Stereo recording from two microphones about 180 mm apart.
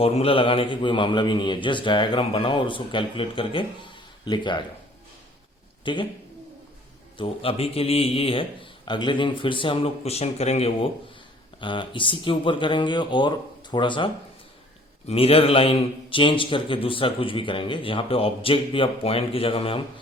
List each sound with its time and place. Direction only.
0.0 s a man's voice: 35° left (ahead or behind)
5.8 s speech: 25° left (ahead or behind)
7.2 s a man's voice: 30° left (ahead or behind)